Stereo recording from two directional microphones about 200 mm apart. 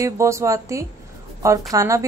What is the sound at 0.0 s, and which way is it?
A woman's voice, 15° right (ahead or behind).